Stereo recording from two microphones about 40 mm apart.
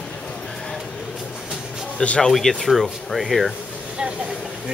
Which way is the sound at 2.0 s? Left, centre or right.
Left.